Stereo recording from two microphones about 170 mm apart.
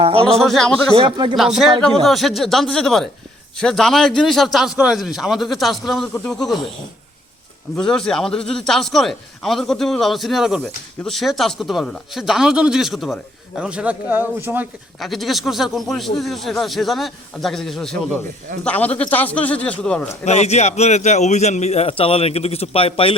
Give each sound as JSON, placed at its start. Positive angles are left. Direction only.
{"t": 0.3, "sound": "a man's voice", "side_deg": 0}
{"t": 0.9, "sound": "speech", "side_deg": -30}
{"t": 1.4, "sound": "a man's voice", "side_deg": 0}
{"t": 7.8, "sound": "a man's voice", "side_deg": 5}
{"t": 15.0, "sound": "a man's voice", "side_deg": 0}
{"t": 20.2, "sound": "a man's voice", "side_deg": 40}